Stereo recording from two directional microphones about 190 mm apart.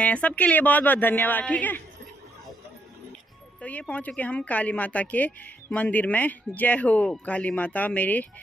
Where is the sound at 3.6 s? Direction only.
10° left (ahead or behind).